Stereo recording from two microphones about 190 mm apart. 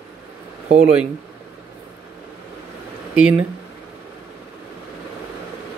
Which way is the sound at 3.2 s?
5° right (ahead or behind).